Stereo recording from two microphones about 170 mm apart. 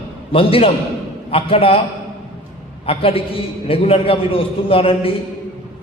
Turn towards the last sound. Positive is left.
turn(degrees=35)  # may be behind; listen again after turning